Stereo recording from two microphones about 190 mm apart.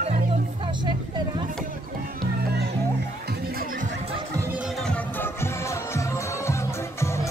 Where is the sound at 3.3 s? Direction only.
50° right (ahead or behind).